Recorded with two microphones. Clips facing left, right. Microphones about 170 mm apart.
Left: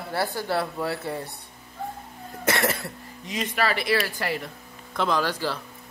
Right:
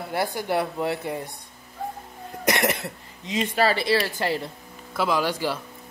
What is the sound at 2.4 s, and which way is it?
Speech, 15° right (ahead or behind).